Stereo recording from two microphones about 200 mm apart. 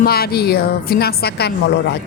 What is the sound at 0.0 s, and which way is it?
Speech, 50° left (ahead or behind).